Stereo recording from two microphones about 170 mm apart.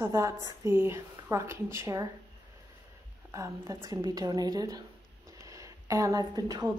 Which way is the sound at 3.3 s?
15° right (ahead or behind).